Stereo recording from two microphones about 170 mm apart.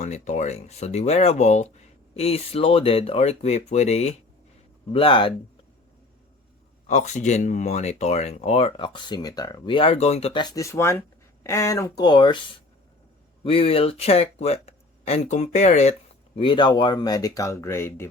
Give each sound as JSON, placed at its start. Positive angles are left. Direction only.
{"t": 0.0, "sound": "speech", "side_deg": 45}
{"t": 6.8, "sound": "speech", "side_deg": 45}
{"t": 13.4, "sound": "speech", "side_deg": 35}